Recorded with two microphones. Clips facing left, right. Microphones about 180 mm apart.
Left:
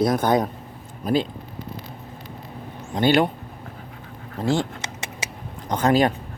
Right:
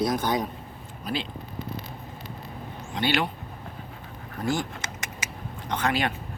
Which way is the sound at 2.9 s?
45° left (ahead or behind).